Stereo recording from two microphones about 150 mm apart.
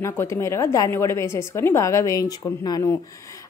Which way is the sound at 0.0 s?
20° left (ahead or behind).